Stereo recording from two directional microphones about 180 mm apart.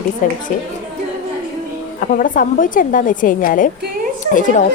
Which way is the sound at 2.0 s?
50° left (ahead or behind).